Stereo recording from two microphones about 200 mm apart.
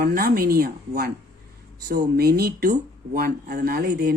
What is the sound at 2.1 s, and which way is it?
Speech, 50° right (ahead or behind).